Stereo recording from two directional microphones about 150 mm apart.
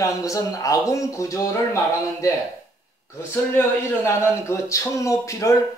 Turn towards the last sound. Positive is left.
turn(degrees=20)  # may be behind; listen again after turning